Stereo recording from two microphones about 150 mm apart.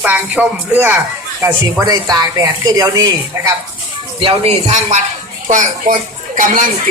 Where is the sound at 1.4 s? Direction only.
20° right (ahead or behind).